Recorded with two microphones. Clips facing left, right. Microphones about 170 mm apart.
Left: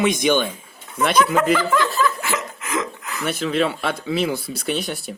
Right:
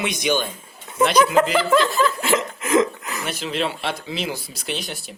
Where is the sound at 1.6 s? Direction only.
25° right (ahead or behind).